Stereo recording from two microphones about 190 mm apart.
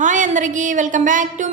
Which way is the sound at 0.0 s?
40° right (ahead or behind).